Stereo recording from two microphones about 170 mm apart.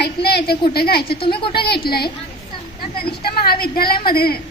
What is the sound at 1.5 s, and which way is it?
Speech, 70° left (ahead or behind).